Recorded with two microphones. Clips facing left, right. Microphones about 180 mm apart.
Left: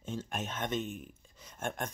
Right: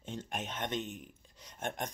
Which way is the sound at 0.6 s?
10° left (ahead or behind).